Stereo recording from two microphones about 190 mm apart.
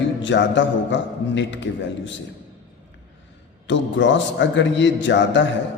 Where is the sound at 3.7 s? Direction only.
70° left (ahead or behind).